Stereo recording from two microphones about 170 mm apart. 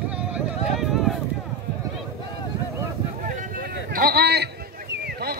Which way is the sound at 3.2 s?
50° right (ahead or behind).